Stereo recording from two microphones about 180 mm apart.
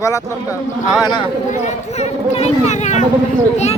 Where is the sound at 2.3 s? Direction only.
40° left (ahead or behind).